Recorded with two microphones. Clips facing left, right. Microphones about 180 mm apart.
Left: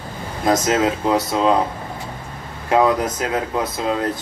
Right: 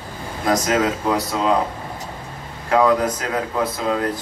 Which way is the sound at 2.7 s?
20° left (ahead or behind).